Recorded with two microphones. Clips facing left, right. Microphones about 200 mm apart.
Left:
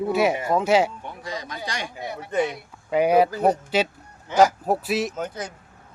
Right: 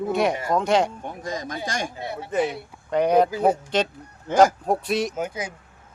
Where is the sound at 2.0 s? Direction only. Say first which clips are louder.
Right 1 dB; 25° right (ahead or behind).